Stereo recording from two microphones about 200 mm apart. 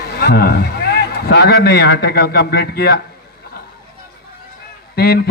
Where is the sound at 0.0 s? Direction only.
50° left (ahead or behind).